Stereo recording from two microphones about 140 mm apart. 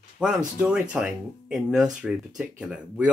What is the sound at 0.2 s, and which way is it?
Speech, 5° right (ahead or behind).